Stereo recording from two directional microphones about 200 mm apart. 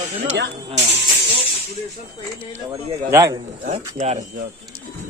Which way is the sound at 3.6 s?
35° right (ahead or behind).